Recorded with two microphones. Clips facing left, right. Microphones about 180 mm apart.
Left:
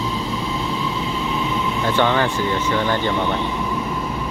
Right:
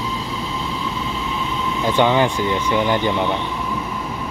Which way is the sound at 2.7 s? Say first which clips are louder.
Right 4 dB; 15° right (ahead or behind).